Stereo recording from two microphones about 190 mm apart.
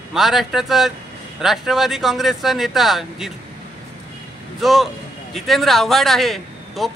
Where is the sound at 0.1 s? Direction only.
Centre (ahead or behind).